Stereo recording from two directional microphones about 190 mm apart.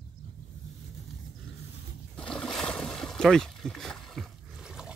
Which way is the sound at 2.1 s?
5° left (ahead or behind).